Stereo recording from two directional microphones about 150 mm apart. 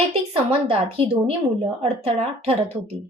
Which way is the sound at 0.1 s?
40° right (ahead or behind).